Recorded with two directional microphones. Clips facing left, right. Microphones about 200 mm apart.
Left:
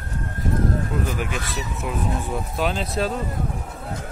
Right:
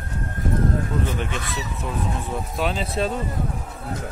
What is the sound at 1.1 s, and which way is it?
Speech, 5° left (ahead or behind).